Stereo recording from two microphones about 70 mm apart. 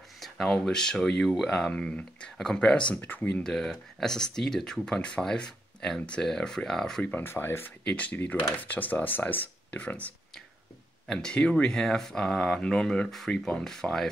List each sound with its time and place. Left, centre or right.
0.2 s speech: centre; by 3.4 s left
3.4 s speech: centre
7.0 s speech: left
7.2 s speech: left
7.8 s speech: centre
11.1 s speech: centre